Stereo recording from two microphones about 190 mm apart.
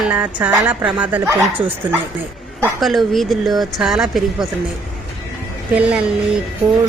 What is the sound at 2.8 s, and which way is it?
Speech, centre (ahead or behind).